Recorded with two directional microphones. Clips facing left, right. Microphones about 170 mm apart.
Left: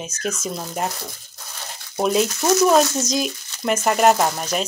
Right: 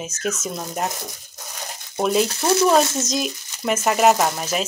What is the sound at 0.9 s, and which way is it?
Speech, 15° right (ahead or behind).